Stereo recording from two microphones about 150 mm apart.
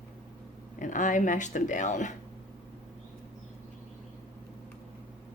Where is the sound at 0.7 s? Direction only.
60° left (ahead or behind).